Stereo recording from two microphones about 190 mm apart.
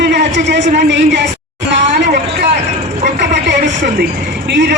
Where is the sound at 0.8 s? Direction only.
65° right (ahead or behind).